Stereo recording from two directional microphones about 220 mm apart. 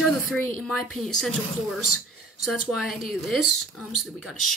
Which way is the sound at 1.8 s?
90° left.